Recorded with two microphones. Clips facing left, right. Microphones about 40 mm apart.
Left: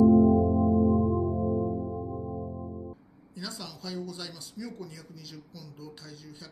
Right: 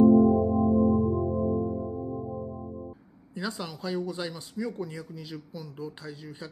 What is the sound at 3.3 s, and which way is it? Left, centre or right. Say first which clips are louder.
Speech: right 6 dB; right.